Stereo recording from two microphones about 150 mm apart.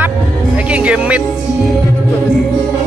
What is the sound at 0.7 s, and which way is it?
Music, 10° right (ahead or behind).